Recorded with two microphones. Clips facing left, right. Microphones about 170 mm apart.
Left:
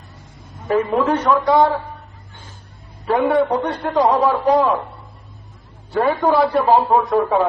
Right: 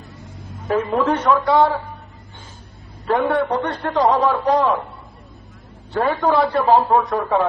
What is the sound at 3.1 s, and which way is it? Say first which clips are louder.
A man's voice: left 2 dB; 10° left (ahead or behind).